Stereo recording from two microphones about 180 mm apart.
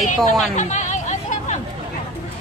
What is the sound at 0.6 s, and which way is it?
Chatter, 40° left (ahead or behind).